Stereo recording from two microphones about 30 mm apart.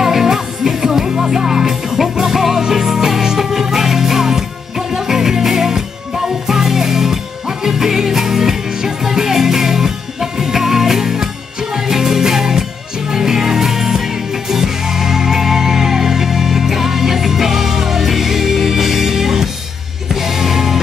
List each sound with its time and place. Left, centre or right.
0.0 s music: centre